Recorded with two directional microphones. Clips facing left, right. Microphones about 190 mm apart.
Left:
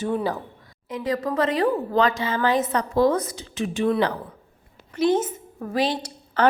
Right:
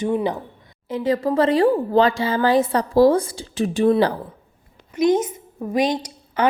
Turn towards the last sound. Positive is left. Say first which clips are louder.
# even
turn(degrees=-10)  # may be behind; listen again after turning